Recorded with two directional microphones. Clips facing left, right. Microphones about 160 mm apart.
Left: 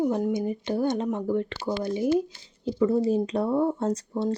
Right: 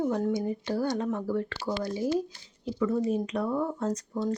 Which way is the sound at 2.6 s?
30° left (ahead or behind).